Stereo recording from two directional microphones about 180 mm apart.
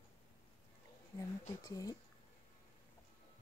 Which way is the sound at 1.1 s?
20° left (ahead or behind).